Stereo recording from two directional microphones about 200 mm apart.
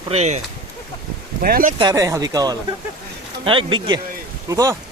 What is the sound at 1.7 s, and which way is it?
Speech, 20° right (ahead or behind).